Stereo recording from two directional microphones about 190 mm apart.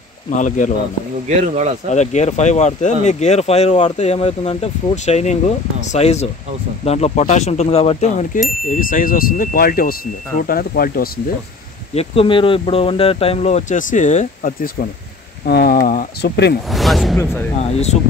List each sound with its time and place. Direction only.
0.4 s speech: 40° left (ahead or behind)
1.9 s speech: 35° left (ahead or behind)
8.6 s chime: 45° left (ahead or behind)
11.9 s speech: 30° left (ahead or behind); by 16.5 s 60° left (ahead or behind)
16.7 s speech: centre (ahead or behind)
17.2 s speech: 10° left (ahead or behind)
17.6 s speech: 35° left (ahead or behind)